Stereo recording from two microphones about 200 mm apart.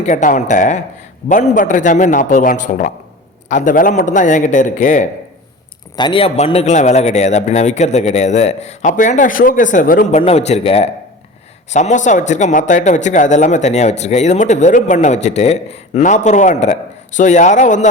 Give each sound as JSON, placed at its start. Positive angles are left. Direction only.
{"t": 0.0, "sound": "a man's voice", "side_deg": 40}
{"t": 6.0, "sound": "a man's voice", "side_deg": 25}